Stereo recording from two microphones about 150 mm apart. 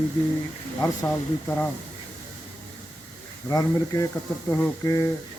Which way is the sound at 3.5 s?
20° left (ahead or behind).